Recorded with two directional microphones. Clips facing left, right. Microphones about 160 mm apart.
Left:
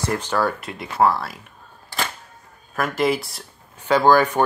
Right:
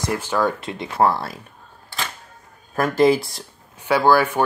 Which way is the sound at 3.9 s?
10° right (ahead or behind).